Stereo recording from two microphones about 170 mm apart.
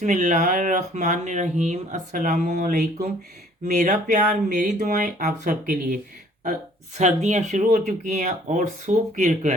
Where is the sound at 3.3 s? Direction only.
65° right (ahead or behind).